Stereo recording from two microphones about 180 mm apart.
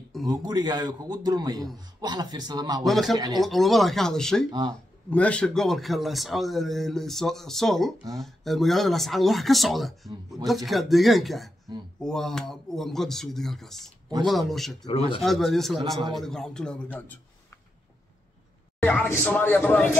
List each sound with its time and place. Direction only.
0.2 s a man's voice: 20° right (ahead or behind)
2.8 s speech: centre (ahead or behind)
4.5 s a man's voice: 25° right (ahead or behind)
5.1 s a man's voice: 5° left (ahead or behind)
18.8 s speech: 10° left (ahead or behind)